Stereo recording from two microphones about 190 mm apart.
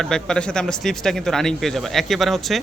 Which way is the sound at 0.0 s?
5° left (ahead or behind).